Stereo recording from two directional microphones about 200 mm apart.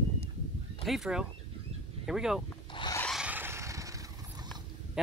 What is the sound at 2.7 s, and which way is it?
Rub, 20° left (ahead or behind).